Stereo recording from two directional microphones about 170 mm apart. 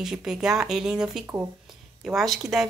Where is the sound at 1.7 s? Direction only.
Centre (ahead or behind).